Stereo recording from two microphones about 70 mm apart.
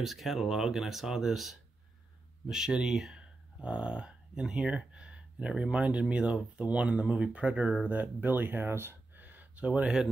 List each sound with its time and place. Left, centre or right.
0.0 s speech: centre; by 9.2 s right
9.2 s a sound: right
9.7 s speech: centre